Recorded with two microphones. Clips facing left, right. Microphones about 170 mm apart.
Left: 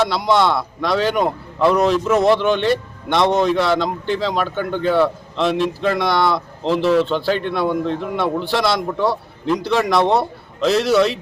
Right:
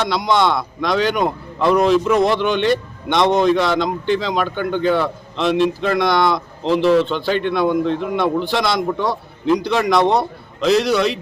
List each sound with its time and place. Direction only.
0.0 s a man's voice: 5° left (ahead or behind)